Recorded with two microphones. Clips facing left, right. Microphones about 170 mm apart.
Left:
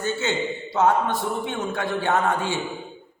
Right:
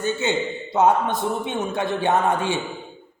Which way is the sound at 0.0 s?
15° right (ahead or behind).